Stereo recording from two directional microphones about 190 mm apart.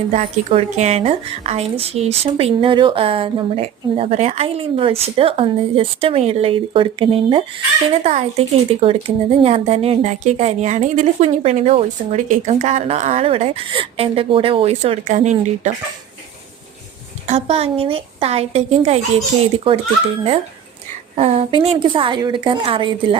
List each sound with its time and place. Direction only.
0.1 s speech: 35° right (ahead or behind)
17.2 s a woman's voice: 35° right (ahead or behind)
21.2 s a woman's voice: 30° right (ahead or behind)